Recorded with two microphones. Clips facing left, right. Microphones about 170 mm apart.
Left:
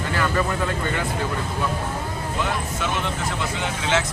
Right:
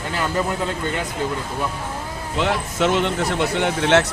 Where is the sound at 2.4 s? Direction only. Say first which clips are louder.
Right 7 dB; 70° right (ahead or behind).